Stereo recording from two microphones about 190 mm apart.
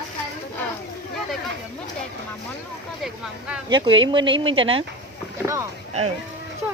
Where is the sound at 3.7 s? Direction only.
25° right (ahead or behind).